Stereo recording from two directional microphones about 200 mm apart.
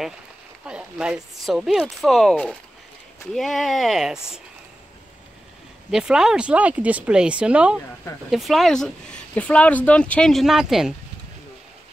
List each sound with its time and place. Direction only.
0.7 s speech: 5° right (ahead or behind)
5.9 s speech: 5° right (ahead or behind)